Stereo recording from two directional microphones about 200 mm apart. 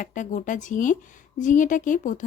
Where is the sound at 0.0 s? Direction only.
40° left (ahead or behind).